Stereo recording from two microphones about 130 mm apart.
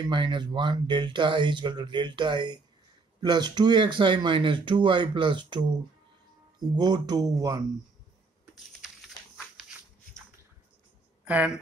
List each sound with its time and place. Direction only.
0.0 s speech: 35° right (ahead or behind)
6.8 s speech: 30° right (ahead or behind)
11.2 s speech: 10° right (ahead or behind)